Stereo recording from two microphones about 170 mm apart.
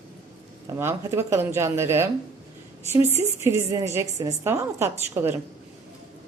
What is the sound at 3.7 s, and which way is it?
Speech, 20° right (ahead or behind).